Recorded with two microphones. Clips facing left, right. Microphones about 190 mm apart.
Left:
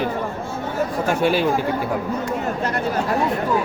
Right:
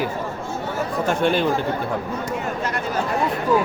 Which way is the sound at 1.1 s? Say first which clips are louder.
Even; 5° left (ahead or behind).